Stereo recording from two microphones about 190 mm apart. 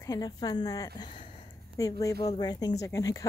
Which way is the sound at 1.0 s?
25° left (ahead or behind).